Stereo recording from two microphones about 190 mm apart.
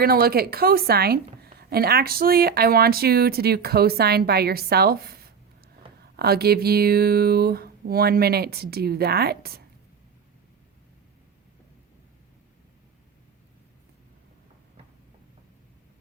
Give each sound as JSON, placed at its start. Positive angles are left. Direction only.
{"t": 0.0, "sound": "a woman's voice", "side_deg": -55}